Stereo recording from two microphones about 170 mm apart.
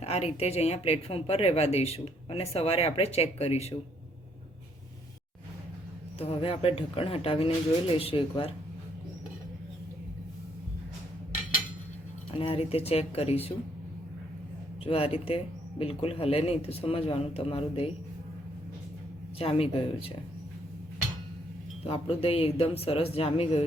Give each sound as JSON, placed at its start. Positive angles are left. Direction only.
{"t": 0.0, "sound": "speech", "side_deg": 40}
{"t": 6.1, "sound": "speech", "side_deg": 35}
{"t": 12.4, "sound": "speech", "side_deg": 35}
{"t": 14.8, "sound": "speech", "side_deg": 35}
{"t": 19.4, "sound": "speech", "side_deg": 35}
{"t": 21.8, "sound": "speech", "side_deg": 35}